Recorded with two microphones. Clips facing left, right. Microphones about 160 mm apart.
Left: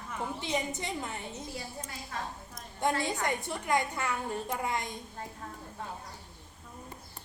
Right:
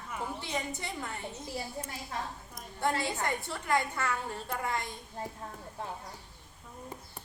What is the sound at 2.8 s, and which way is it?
A woman's voice, 15° left (ahead or behind).